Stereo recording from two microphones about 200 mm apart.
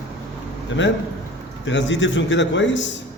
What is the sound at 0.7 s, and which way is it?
A man's voice, 70° left (ahead or behind).